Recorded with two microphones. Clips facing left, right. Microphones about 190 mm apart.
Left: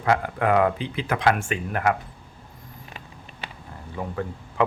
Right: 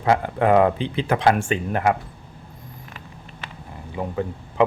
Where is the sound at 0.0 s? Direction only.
25° right (ahead or behind).